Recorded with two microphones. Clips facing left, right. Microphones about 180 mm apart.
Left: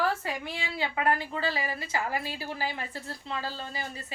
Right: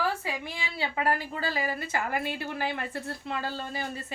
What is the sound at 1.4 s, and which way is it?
A woman's voice, 45° right (ahead or behind).